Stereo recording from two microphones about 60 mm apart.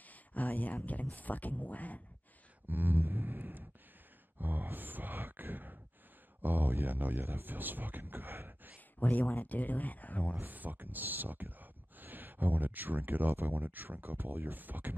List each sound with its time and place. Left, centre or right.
0.0 s a sound: left
1.1 s speech: left
2.7 s a sound: right
4.4 s speech: right
9.0 s speech: left
10.3 s speech: right